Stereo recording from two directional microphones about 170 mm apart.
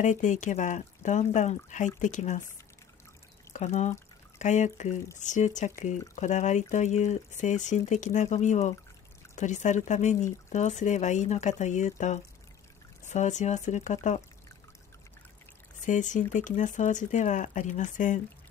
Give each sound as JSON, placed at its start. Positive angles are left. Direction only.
{"t": 0.0, "sound": "speech", "side_deg": 45}
{"t": 3.5, "sound": "speech", "side_deg": 45}
{"t": 15.8, "sound": "speech", "side_deg": 45}